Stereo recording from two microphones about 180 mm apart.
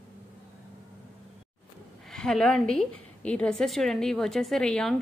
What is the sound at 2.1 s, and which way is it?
A woman's voice, 5° left (ahead or behind).